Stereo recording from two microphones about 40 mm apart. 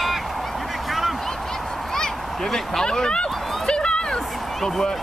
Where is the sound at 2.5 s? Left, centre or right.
Centre.